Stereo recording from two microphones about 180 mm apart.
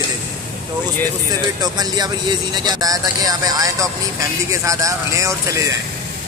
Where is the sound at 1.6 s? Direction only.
20° right (ahead or behind).